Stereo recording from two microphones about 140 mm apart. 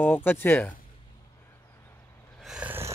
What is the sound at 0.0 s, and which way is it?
Speech, 15° left (ahead or behind).